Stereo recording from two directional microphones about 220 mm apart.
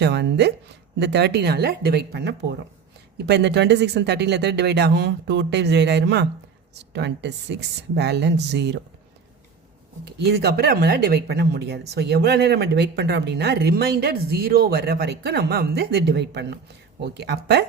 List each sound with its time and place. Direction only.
0.0 s speech: 50° right (ahead or behind)
10.0 s speech: 50° right (ahead or behind)